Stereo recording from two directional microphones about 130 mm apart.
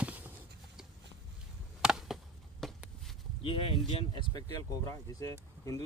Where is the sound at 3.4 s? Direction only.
45° left (ahead or behind); by 5.8 s 25° left (ahead or behind).